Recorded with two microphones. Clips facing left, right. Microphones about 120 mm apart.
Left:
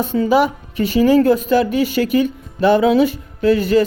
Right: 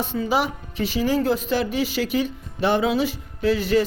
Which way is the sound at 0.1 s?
55° left (ahead or behind).